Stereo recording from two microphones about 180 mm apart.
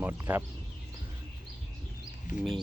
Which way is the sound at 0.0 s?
10° right (ahead or behind).